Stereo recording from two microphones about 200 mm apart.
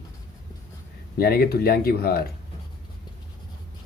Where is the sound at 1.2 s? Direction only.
50° left (ahead or behind).